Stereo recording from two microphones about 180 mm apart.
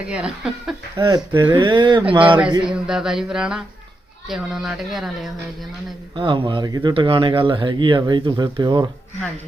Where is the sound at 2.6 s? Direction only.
5° right (ahead or behind).